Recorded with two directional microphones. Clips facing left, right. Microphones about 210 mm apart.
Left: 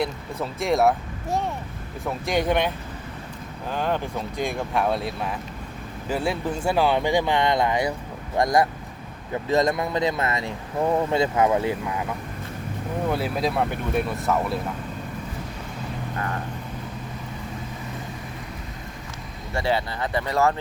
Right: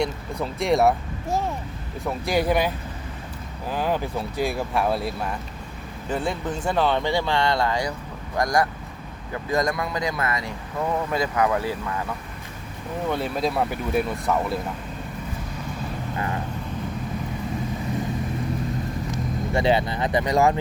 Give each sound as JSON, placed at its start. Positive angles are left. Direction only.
{"t": 0.0, "sound": "speech", "side_deg": 0}
{"t": 13.1, "sound": "speech", "side_deg": 5}
{"t": 19.1, "sound": "speech", "side_deg": -20}